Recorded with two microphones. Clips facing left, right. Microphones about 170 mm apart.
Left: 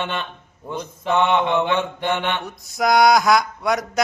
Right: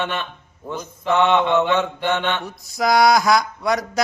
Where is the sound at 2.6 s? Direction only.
Centre (ahead or behind).